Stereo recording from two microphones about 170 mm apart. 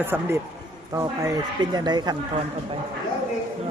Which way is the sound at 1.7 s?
25° right (ahead or behind).